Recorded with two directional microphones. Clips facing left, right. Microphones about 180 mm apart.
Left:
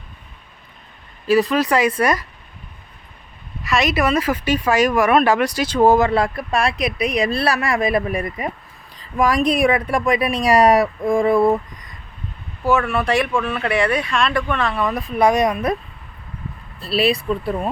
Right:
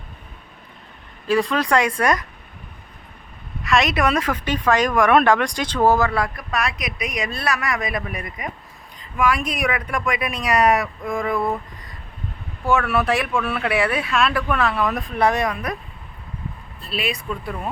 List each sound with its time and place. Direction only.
1.3 s speech: 5° left (ahead or behind)
3.6 s speech: centre (ahead or behind); by 11.4 s 30° left (ahead or behind)
12.6 s speech: centre (ahead or behind)
15.2 s speech: 15° left (ahead or behind)
16.8 s speech: 35° left (ahead or behind)